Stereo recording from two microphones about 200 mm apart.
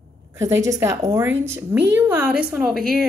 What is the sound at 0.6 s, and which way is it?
A woman's voice, 15° right (ahead or behind).